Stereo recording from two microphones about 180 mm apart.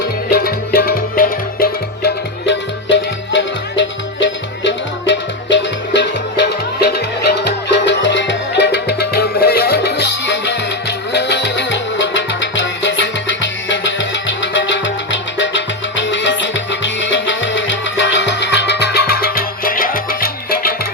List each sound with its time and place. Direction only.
0.3 s music: 60° left (ahead or behind)